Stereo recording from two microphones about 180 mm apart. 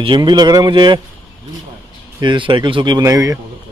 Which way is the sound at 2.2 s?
25° right (ahead or behind).